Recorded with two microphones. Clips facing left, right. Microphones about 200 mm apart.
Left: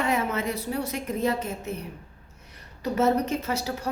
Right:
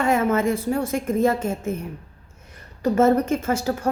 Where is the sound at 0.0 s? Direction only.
50° right (ahead or behind).